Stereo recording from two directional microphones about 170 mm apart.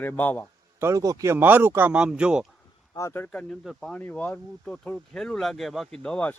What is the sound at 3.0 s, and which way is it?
Speech, 15° left (ahead or behind).